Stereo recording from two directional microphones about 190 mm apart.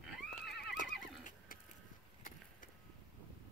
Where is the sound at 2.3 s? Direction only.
45° left (ahead or behind).